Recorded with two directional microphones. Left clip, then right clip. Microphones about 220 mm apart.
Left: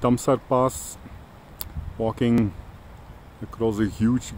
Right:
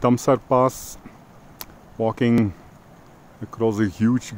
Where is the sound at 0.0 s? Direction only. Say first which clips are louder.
Right 3 dB; 25° right (ahead or behind).